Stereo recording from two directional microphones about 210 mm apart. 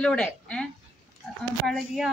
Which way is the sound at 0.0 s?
5° left (ahead or behind).